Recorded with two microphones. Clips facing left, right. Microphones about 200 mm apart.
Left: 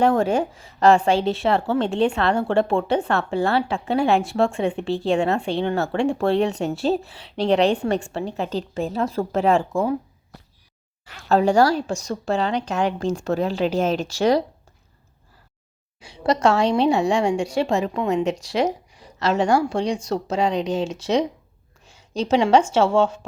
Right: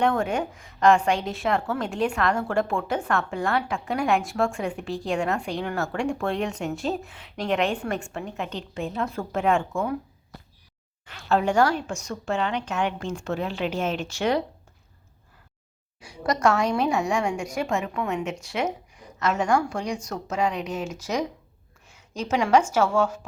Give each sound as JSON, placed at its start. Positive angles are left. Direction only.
{"t": 0.0, "sound": "speech", "side_deg": 35}
{"t": 11.3, "sound": "speech", "side_deg": 35}
{"t": 16.0, "sound": "a woman's voice", "side_deg": 25}
{"t": 21.8, "sound": "a sound", "side_deg": 30}
{"t": 22.7, "sound": "a woman's voice", "side_deg": 25}